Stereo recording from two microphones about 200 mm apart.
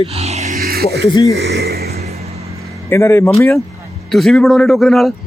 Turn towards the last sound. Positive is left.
turn(degrees=0)  # may be behind; listen again after turning